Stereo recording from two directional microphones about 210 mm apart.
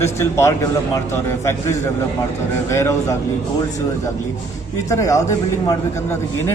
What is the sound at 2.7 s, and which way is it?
Speech, 15° left (ahead or behind).